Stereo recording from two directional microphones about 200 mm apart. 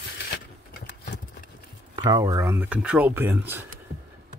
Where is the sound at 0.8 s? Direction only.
45° left (ahead or behind).